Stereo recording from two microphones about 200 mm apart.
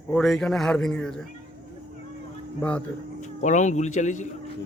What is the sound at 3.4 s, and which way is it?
Speech, 35° left (ahead or behind).